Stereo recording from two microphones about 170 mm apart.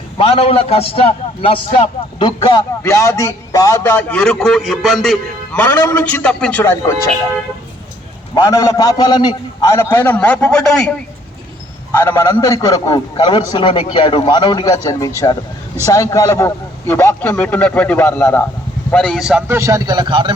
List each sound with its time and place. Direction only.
0.2 s a man's voice: 35° left (ahead or behind); by 5.2 s centre (ahead or behind)
5.5 s a man's voice: 15° left (ahead or behind)
8.4 s a man's voice: 20° left (ahead or behind); by 19.5 s centre (ahead or behind)
19.5 s a man's voice: 15° right (ahead or behind)